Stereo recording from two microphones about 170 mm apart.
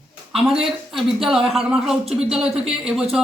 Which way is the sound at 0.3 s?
Centre (ahead or behind).